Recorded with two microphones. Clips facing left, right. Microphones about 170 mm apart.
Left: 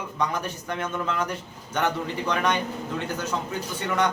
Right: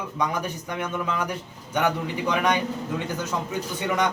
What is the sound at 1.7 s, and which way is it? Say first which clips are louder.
Speech: right 2 dB; 10° right (ahead or behind).